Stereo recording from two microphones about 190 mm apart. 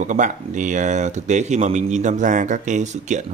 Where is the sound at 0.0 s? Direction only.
40° right (ahead or behind).